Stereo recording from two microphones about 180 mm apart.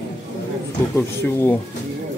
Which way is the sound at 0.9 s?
15° left (ahead or behind).